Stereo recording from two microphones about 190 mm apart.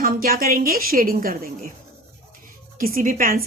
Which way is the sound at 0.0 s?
50° right (ahead or behind).